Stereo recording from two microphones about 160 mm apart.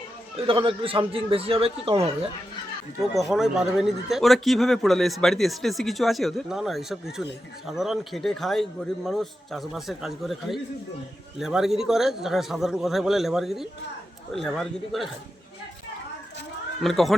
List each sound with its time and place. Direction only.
0.3 s a man's voice: 35° right (ahead or behind)
3.2 s speech: centre (ahead or behind)
16.8 s speech: centre (ahead or behind)